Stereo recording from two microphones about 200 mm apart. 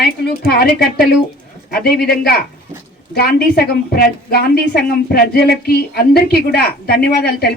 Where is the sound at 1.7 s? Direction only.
50° left (ahead or behind).